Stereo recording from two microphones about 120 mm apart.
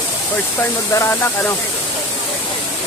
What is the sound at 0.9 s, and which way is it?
Speech, 20° left (ahead or behind).